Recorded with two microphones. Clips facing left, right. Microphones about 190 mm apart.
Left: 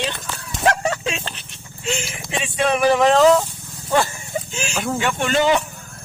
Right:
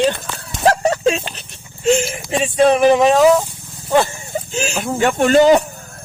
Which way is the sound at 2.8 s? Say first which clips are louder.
Left 1 dB; 20° right (ahead or behind).